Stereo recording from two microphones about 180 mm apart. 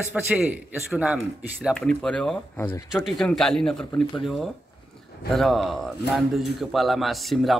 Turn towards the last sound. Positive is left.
turn(degrees=0)  # may be behind; listen again after turning